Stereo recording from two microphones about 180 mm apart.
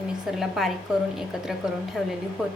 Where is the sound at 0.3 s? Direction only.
Centre (ahead or behind).